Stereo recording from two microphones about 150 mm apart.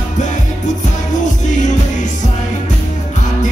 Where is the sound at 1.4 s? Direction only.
55° left (ahead or behind).